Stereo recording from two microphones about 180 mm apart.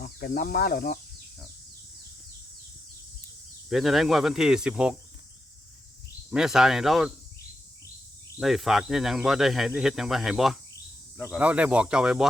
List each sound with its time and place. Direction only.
0.0 s speech: 55° left (ahead or behind)
3.7 s speech: centre (ahead or behind)
6.3 s speech: 5° right (ahead or behind)
8.4 s speech: centre (ahead or behind)